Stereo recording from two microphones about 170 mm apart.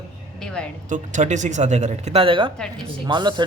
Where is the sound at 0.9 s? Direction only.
50° right (ahead or behind).